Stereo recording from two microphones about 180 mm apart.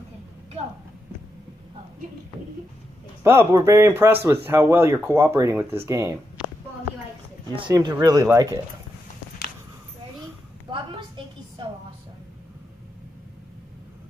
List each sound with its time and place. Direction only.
3.3 s speech: 15° right (ahead or behind)
7.7 s speech: 20° right (ahead or behind)